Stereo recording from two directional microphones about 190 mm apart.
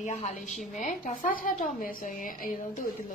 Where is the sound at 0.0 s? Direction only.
40° left (ahead or behind).